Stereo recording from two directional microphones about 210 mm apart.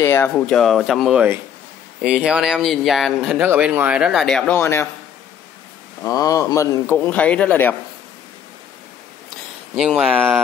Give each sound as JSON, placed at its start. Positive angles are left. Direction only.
{"t": 0.0, "sound": "speech", "side_deg": 15}
{"t": 6.0, "sound": "speech", "side_deg": 15}
{"t": 9.8, "sound": "speech", "side_deg": -5}